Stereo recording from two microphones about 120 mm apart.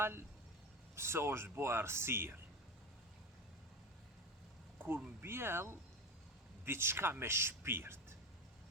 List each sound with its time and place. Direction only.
0.0 s speech: 20° right (ahead or behind)
5.2 s speech: 20° right (ahead or behind)